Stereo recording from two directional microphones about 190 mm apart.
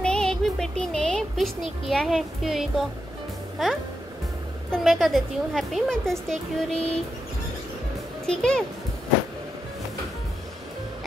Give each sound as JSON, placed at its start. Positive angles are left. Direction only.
{"t": 0.0, "sound": "music", "side_deg": 5}
{"t": 3.6, "sound": "a woman's voice", "side_deg": 0}
{"t": 8.3, "sound": "a woman's voice", "side_deg": 5}